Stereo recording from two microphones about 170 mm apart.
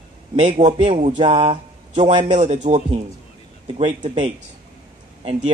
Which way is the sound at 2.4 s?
40° right (ahead or behind).